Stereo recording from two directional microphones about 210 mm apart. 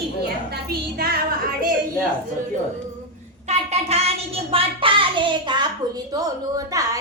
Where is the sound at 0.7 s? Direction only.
45° right (ahead or behind).